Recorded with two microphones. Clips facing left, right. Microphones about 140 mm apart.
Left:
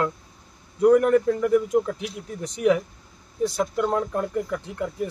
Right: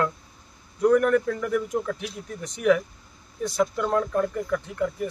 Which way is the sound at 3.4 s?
30° left (ahead or behind).